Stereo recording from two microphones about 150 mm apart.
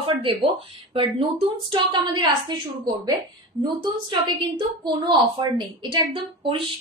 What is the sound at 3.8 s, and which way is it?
A woman's voice, 30° right (ahead or behind).